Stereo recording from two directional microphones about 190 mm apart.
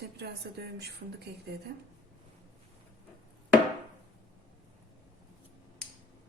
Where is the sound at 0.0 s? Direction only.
60° right (ahead or behind).